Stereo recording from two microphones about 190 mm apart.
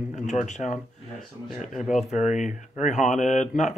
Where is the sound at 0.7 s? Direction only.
5° right (ahead or behind).